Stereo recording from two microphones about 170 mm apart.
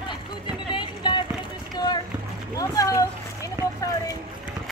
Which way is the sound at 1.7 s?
25° left (ahead or behind).